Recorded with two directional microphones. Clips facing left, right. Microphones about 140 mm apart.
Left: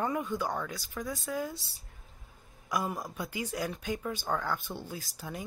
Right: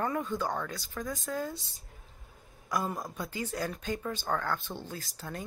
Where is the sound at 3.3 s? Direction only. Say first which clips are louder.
Even; 10° left (ahead or behind).